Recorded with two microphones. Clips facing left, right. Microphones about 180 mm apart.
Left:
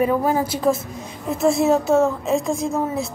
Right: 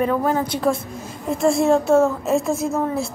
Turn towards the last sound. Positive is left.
turn(degrees=0)  # may be behind; listen again after turning